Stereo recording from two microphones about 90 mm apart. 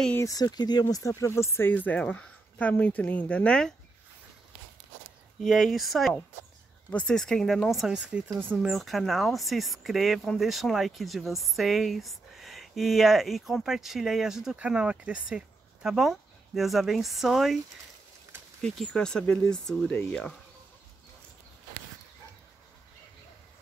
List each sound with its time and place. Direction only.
0.2 s speech: 45° left (ahead or behind); by 3.7 s 10° left (ahead or behind)
5.4 s speech: centre (ahead or behind)
6.9 s speech: 10° left (ahead or behind)
8.0 s speech: 10° right (ahead or behind)
8.5 s speech: centre (ahead or behind)
18.6 s speech: 5° left (ahead or behind)
19.9 s speech: 15° left (ahead or behind)